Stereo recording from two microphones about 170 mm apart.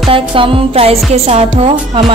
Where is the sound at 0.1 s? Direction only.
30° right (ahead or behind).